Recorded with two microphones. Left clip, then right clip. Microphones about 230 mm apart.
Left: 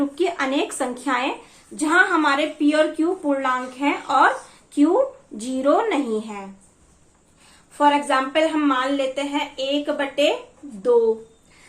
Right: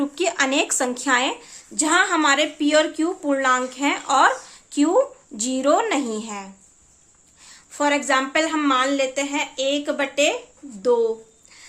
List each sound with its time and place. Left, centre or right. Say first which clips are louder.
0.1 s a woman's voice: right 1 dB; right
7.8 s a woman's voice: left 2 dB; right